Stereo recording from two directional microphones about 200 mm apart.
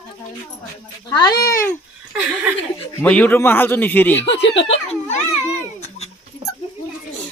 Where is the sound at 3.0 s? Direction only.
5° left (ahead or behind).